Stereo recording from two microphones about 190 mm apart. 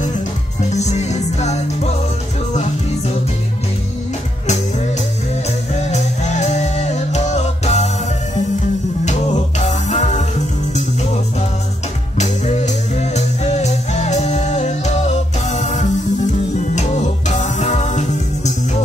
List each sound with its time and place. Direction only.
0.7 s music: 35° left (ahead or behind)
5.8 s music: 35° left (ahead or behind)
9.7 s music: 35° left (ahead or behind)
12.2 s music: 40° left (ahead or behind)